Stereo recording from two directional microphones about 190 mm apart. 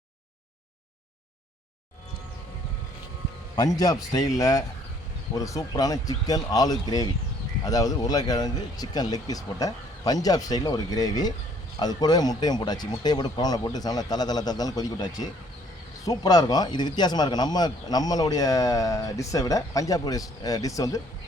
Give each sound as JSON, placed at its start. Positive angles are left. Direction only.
{"t": 3.5, "sound": "speech", "side_deg": 20}